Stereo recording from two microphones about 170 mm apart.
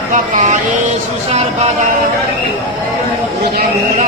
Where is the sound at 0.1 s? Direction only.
45° right (ahead or behind).